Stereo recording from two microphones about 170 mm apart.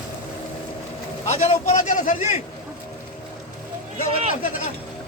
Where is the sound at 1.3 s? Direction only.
45° left (ahead or behind).